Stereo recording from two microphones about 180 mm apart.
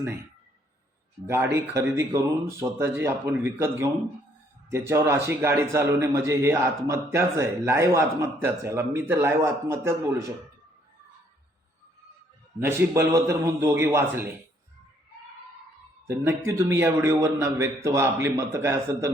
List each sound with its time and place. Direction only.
1.5 s a man's voice: 15° right (ahead or behind)
12.6 s a man's voice: 15° right (ahead or behind)
16.4 s a man's voice: 15° right (ahead or behind)